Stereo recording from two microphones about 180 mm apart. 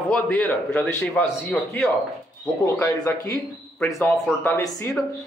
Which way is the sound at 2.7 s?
15° left (ahead or behind).